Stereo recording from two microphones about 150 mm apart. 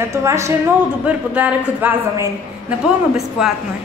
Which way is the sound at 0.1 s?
20° right (ahead or behind).